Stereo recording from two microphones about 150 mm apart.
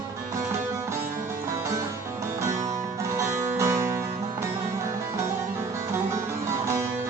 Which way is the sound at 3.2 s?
20° right (ahead or behind).